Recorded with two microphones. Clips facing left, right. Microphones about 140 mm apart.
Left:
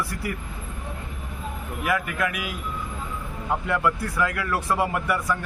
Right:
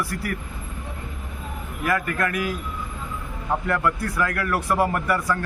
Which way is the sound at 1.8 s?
10° left (ahead or behind).